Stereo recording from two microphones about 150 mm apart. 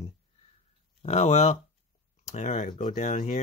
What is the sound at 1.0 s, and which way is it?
Speech, 50° left (ahead or behind).